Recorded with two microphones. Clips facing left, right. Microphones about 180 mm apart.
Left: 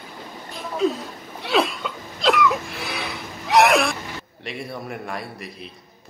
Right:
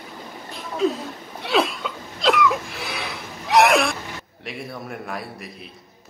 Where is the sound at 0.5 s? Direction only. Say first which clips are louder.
Even; centre (ahead or behind).